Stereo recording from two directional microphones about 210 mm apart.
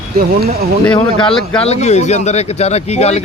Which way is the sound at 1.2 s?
5° left (ahead or behind).